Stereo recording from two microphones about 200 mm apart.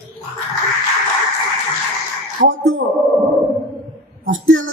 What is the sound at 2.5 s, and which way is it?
Speech, 90° right.